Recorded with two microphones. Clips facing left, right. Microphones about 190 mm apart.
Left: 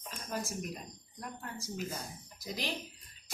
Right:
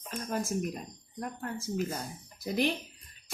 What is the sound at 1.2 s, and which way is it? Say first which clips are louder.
A woman's voice: right 7 dB; 50° right (ahead or behind).